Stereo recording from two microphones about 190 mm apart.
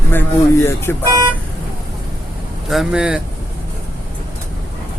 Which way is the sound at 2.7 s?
Centre (ahead or behind).